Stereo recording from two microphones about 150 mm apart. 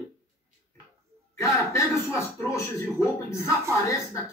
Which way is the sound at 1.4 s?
20° left (ahead or behind).